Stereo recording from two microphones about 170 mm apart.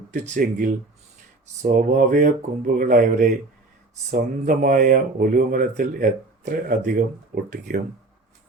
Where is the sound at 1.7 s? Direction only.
50° right (ahead or behind).